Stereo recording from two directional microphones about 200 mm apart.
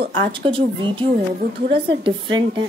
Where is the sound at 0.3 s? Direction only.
25° right (ahead or behind).